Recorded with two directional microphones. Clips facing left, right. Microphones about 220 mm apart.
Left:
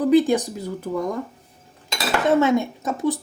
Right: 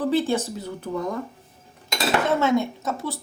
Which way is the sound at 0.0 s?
15° left (ahead or behind).